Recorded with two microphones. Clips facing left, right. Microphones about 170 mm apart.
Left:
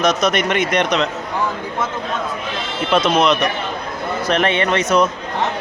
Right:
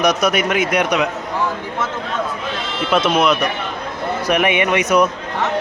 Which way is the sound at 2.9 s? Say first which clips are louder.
Even; 5° right (ahead or behind).